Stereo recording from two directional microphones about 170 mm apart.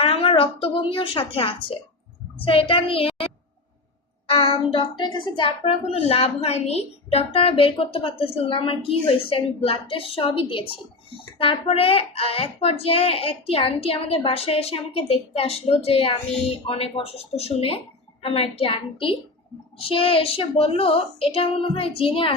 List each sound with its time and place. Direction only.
0.0 s a woman's voice: 35° left (ahead or behind)
4.3 s a woman's voice: 30° left (ahead or behind)